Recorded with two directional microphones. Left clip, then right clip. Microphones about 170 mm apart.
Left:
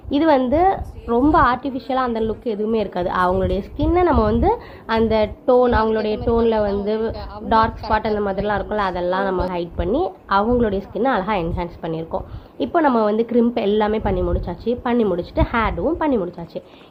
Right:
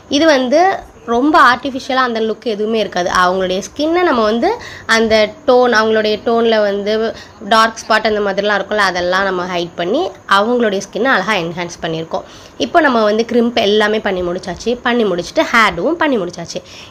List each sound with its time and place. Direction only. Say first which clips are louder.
0.1 s a woman's voice: right 5 dB; 5° right (ahead or behind)